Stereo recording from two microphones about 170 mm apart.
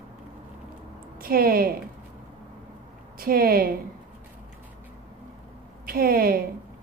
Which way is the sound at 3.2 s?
60° right (ahead or behind).